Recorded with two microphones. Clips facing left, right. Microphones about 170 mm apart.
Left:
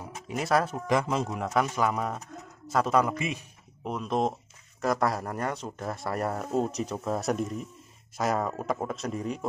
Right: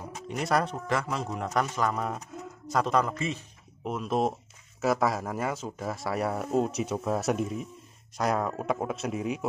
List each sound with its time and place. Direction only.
0.3 s speech: centre (ahead or behind)
0.8 s a man's voice: 20° left (ahead or behind)
1.3 s a man's voice: centre (ahead or behind)
3.8 s speech: centre (ahead or behind)